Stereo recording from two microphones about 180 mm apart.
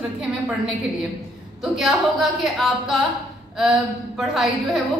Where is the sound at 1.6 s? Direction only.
Centre (ahead or behind).